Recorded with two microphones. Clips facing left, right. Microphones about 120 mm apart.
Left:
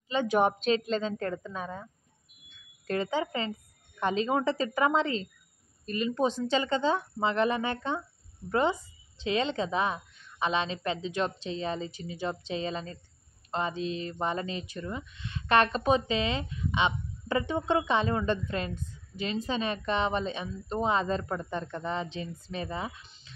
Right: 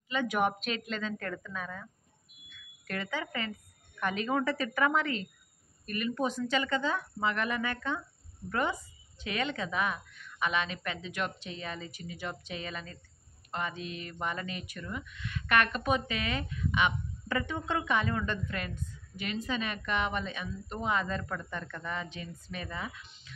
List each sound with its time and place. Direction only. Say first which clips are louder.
0.1 s a woman's voice: left 4 dB; 30° left (ahead or behind)